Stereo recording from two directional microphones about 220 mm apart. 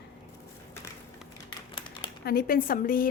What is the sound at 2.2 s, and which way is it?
Speech, 45° left (ahead or behind).